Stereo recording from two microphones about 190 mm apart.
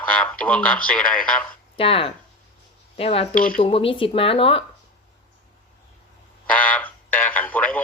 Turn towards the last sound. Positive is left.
turn(degrees=10)  # may be behind; listen again after turning